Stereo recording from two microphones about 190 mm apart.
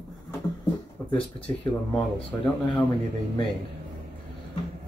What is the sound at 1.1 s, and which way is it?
Speech, 10° left (ahead or behind).